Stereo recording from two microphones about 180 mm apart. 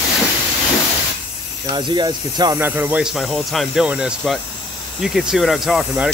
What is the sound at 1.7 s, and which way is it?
Speech, 25° right (ahead or behind).